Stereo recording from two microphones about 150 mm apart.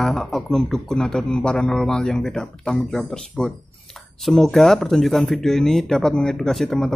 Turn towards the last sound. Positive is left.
turn(degrees=0)  # may be behind; listen again after turning